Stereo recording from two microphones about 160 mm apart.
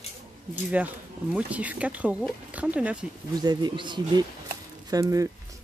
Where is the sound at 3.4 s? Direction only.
30° right (ahead or behind).